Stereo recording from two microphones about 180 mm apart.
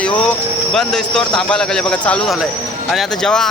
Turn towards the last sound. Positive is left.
turn(degrees=5)  # may be behind; listen again after turning